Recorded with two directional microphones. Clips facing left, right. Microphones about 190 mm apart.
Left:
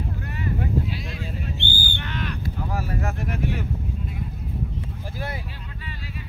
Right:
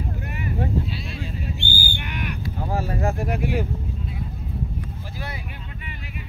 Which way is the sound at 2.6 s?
30° right (ahead or behind).